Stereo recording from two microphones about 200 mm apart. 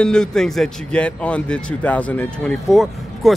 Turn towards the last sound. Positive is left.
turn(degrees=0)  # may be behind; listen again after turning